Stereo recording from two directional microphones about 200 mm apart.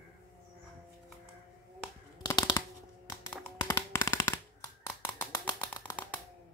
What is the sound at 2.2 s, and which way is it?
Shuffling cards, 20° left (ahead or behind).